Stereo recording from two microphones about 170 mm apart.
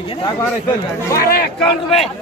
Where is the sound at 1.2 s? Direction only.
65° left (ahead or behind).